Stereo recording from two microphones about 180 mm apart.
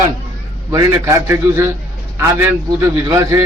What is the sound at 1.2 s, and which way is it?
A man's voice, 15° right (ahead or behind).